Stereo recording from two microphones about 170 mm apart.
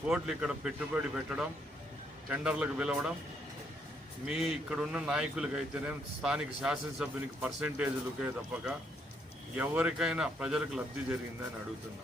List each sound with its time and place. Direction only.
0.1 s a man's voice: 5° right (ahead or behind)
4.3 s a man's voice: 5° right (ahead or behind)